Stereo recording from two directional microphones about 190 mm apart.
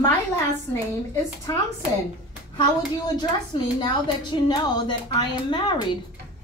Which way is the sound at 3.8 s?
25° left (ahead or behind).